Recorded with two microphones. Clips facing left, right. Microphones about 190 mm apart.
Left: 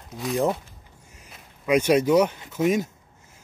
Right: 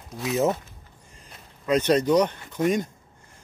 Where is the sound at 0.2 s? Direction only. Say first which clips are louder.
Even; centre (ahead or behind).